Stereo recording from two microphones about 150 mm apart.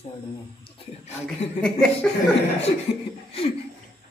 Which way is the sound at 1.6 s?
5° left (ahead or behind).